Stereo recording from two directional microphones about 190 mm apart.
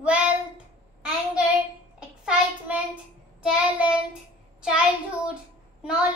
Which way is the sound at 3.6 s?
5° right (ahead or behind).